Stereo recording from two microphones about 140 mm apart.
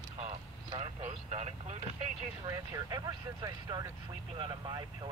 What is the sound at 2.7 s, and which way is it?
Speech, 25° right (ahead or behind).